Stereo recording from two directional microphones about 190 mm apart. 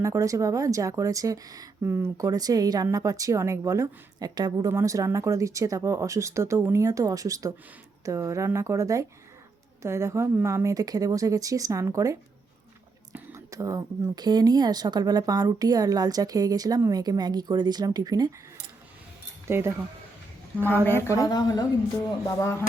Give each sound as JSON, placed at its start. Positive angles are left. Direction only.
{"t": 0.0, "sound": "speech", "side_deg": -15}
{"t": 13.1, "sound": "speech", "side_deg": -15}
{"t": 19.5, "sound": "speech", "side_deg": -10}
{"t": 20.8, "sound": "a woman's voice", "side_deg": 15}